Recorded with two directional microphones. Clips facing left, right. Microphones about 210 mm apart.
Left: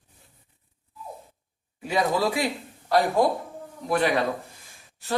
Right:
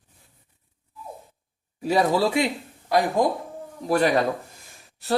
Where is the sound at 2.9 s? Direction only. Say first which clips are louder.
Even; 15° right (ahead or behind).